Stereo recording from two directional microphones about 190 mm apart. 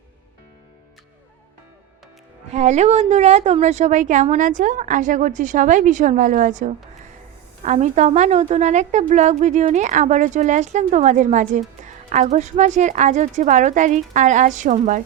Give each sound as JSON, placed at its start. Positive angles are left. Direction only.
{"t": 2.5, "sound": "a woman's voice", "side_deg": -35}